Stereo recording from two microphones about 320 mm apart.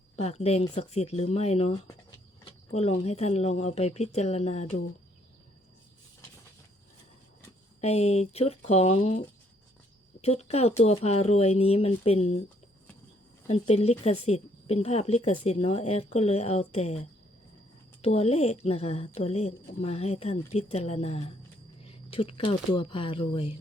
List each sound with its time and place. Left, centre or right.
0.2 s speech: centre
7.8 s speech: centre
13.5 s speech: centre